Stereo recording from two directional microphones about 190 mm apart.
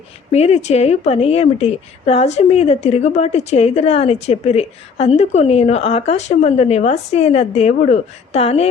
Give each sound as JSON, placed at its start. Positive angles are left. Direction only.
{"t": 0.3, "sound": "speech", "side_deg": 35}